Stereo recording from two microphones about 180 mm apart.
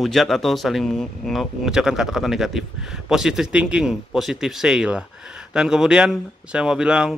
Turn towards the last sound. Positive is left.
turn(degrees=-5)  # may be behind; listen again after turning